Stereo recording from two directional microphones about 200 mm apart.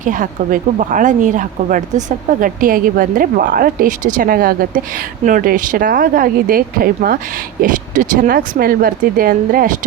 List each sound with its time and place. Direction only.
0.0 s a woman's voice: 40° right (ahead or behind)